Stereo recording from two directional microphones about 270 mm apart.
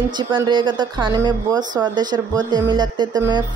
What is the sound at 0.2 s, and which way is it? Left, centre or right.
Speech, centre.